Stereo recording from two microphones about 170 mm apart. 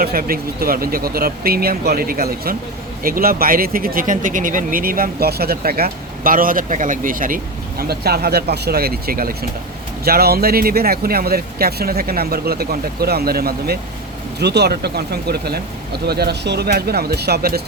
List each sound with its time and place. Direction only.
0.0 s speech: 60° right (ahead or behind)
14.3 s speech: 75° right (ahead or behind)